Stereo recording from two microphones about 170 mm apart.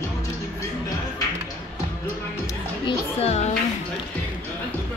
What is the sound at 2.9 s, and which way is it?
Music, 40° left (ahead or behind).